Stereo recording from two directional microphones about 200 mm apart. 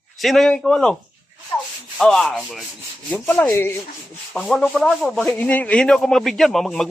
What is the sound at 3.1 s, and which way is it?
Speech, 5° left (ahead or behind).